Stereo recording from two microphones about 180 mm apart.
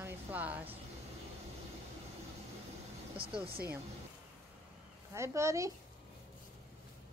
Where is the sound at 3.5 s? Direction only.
60° right (ahead or behind).